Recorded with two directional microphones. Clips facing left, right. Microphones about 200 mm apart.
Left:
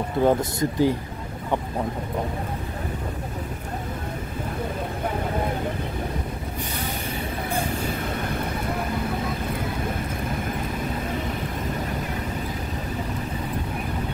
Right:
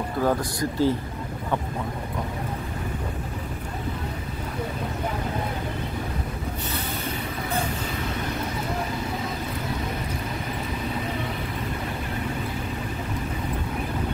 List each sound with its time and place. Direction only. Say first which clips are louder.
0.2 s speech: left 4 dB; 25° left (ahead or behind)